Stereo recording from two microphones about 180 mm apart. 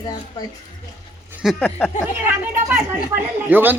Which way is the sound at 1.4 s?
Centre (ahead or behind).